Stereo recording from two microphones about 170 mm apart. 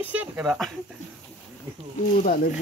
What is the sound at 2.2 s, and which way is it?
Speech, 60° left (ahead or behind).